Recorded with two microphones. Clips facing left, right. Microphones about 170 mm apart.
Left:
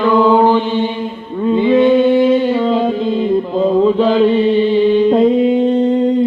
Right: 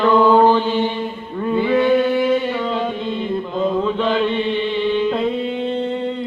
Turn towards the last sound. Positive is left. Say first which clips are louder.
# left 9 dB
turn(degrees=40)  # may be behind; listen again after turning